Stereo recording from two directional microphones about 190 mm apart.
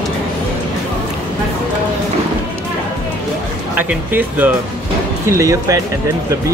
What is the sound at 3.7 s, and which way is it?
Speech, 10° right (ahead or behind).